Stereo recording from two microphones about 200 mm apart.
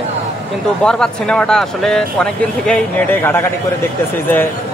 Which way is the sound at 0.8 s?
5° left (ahead or behind).